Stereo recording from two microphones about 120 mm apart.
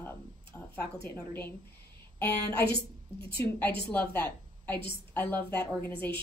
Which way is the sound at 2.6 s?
45° right (ahead or behind).